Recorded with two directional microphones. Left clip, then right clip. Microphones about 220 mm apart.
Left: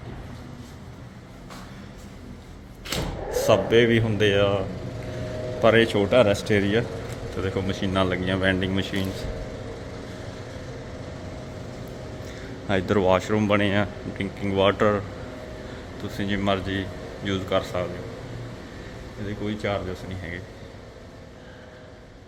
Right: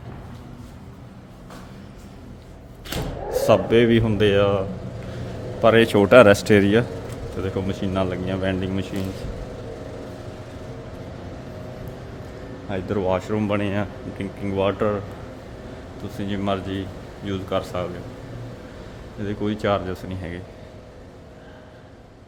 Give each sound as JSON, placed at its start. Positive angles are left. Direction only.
{"t": 3.3, "sound": "speech", "side_deg": -20}
{"t": 5.6, "sound": "speech", "side_deg": -20}
{"t": 5.9, "sound": "speech", "side_deg": -35}
{"t": 7.3, "sound": "speech", "side_deg": -10}
{"t": 12.6, "sound": "speech", "side_deg": 15}
{"t": 16.0, "sound": "speech", "side_deg": 0}
{"t": 17.6, "sound": "a man's voice", "side_deg": -15}
{"t": 19.3, "sound": "speech", "side_deg": -30}